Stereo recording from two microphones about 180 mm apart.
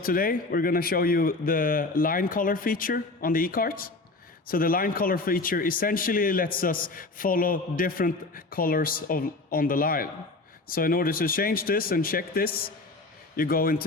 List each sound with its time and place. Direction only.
0.0 s a man's voice: 50° left (ahead or behind)